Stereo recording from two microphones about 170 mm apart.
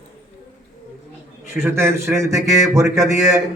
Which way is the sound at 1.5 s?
15° right (ahead or behind).